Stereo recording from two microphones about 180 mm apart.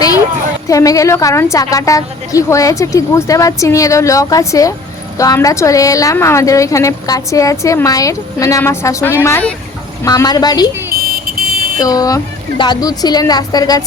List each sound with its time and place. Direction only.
0.7 s a woman's voice: 20° left (ahead or behind)
10.9 s vehicle: 55° right (ahead or behind)
11.8 s a woman's voice: 20° left (ahead or behind)